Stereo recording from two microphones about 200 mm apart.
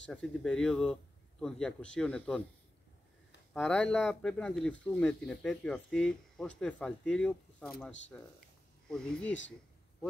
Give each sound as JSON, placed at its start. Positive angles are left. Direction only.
{"t": 0.0, "sound": "speech", "side_deg": 5}
{"t": 3.5, "sound": "speech", "side_deg": 5}